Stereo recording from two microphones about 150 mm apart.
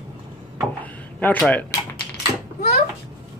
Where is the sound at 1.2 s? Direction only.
10° left (ahead or behind).